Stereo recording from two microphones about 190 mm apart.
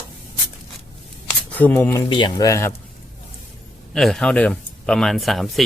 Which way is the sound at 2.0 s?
25° left (ahead or behind).